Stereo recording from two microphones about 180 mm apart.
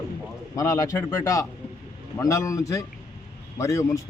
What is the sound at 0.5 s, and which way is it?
A man's voice, 15° left (ahead or behind).